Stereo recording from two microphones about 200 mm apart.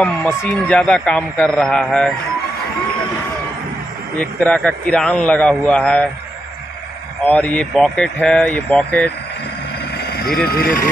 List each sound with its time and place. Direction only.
0.0 s a man's voice: 5° left (ahead or behind)
4.2 s a man's voice: 5° left (ahead or behind)
7.2 s a man's voice: 5° left (ahead or behind)
9.9 s vehicle: 50° left (ahead or behind)
10.5 s speech: 50° left (ahead or behind)